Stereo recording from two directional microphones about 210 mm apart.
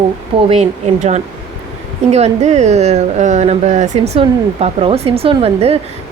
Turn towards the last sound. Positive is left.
turn(degrees=-30)  # may be behind; listen again after turning